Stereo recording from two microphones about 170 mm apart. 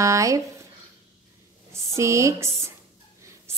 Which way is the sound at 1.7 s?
15° right (ahead or behind).